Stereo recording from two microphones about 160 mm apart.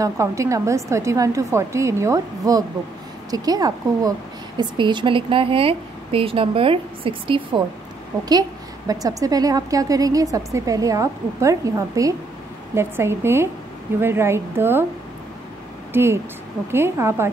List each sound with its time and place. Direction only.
0.0 s a woman's voice: 20° right (ahead or behind)
15.9 s a woman's voice: 15° right (ahead or behind)